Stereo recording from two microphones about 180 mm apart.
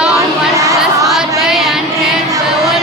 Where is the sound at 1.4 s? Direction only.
Centre (ahead or behind).